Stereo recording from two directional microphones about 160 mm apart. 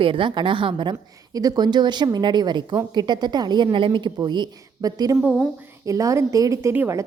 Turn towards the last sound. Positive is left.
turn(degrees=-15)  # may be behind; listen again after turning